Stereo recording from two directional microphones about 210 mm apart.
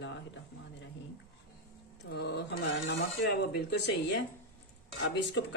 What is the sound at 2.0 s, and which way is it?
Speech, 55° left (ahead or behind).